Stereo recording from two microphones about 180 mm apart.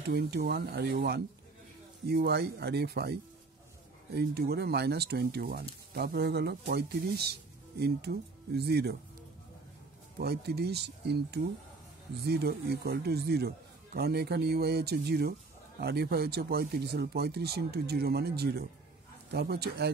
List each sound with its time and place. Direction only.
0.0 s a man's voice: 65° right (ahead or behind)
10.1 s a man's voice: 65° right (ahead or behind)